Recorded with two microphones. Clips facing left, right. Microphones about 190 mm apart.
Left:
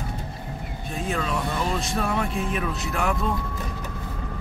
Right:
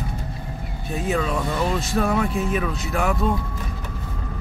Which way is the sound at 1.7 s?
Centre (ahead or behind).